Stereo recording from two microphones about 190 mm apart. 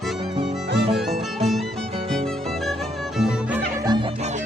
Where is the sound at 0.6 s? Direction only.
65° right (ahead or behind).